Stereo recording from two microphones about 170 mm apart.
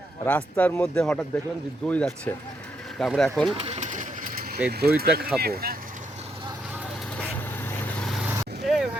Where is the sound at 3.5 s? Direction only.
35° right (ahead or behind); by 4.6 s 55° right (ahead or behind).